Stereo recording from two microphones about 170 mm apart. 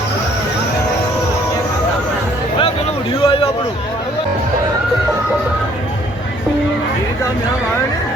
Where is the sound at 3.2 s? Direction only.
30° left (ahead or behind).